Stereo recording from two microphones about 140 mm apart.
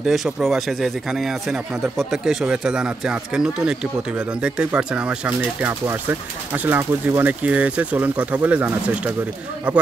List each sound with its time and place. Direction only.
0.0 s speech: centre (ahead or behind)